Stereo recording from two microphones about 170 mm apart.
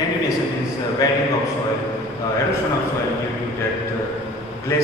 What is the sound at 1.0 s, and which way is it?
Speech, 20° left (ahead or behind).